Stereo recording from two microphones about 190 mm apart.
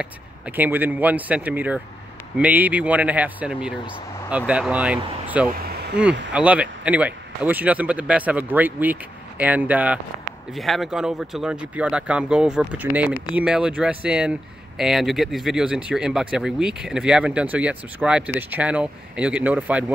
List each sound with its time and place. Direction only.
0.0 s speech: 10° right (ahead or behind)
5.5 s vehicle: 55° right (ahead or behind)
6.3 s speech: 5° right (ahead or behind)